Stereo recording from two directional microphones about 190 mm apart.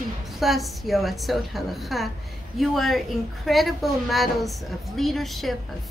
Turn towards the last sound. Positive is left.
turn(degrees=0)  # may be behind; listen again after turning